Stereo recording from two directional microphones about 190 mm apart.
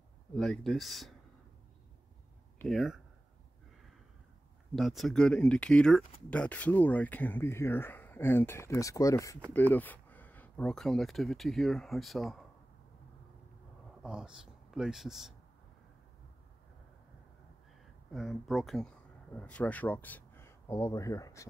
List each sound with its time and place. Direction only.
0.4 s speech: centre (ahead or behind)
2.7 s speech: centre (ahead or behind)
4.7 s speech: centre (ahead or behind)
14.0 s speech: 5° right (ahead or behind)
18.1 s speech: centre (ahead or behind); by 21.5 s 15° left (ahead or behind)